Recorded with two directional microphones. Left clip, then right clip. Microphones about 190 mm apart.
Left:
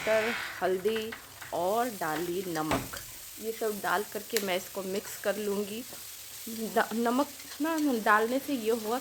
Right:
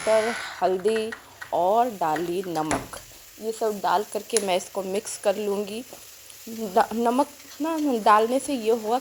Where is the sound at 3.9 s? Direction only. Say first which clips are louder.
Right 7 dB; 15° right (ahead or behind).